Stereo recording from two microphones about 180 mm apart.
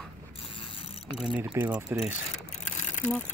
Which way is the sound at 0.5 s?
30° left (ahead or behind).